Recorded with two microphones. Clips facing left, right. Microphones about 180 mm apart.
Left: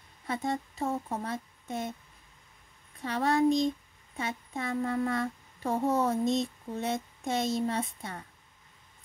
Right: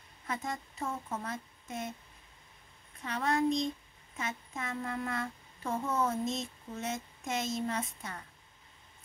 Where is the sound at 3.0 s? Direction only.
35° left (ahead or behind).